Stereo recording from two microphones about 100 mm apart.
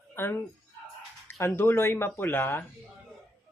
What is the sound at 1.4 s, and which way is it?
Speech, 20° left (ahead or behind).